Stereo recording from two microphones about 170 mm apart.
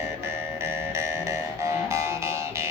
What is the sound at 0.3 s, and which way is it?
Music, 15° right (ahead or behind).